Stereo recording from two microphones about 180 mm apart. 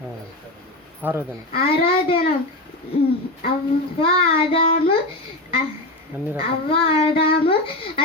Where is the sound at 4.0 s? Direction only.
30° left (ahead or behind).